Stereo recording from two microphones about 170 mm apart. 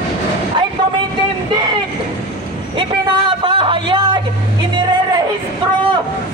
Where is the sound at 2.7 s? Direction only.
30° right (ahead or behind).